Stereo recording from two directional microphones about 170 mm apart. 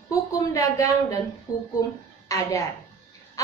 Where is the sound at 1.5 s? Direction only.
10° right (ahead or behind).